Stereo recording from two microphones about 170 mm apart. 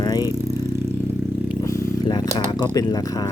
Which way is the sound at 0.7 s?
15° right (ahead or behind).